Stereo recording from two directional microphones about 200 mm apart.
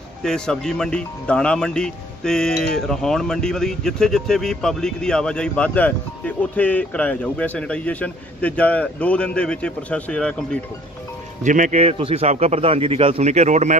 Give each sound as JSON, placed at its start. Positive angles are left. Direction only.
{"t": 0.2, "sound": "speech", "side_deg": 5}
{"t": 11.4, "sound": "a man's voice", "side_deg": -40}